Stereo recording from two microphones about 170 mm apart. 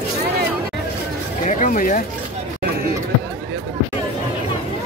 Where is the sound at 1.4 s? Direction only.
50° left (ahead or behind).